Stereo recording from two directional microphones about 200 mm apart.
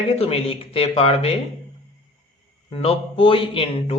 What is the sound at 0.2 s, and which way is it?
Speech, 30° left (ahead or behind).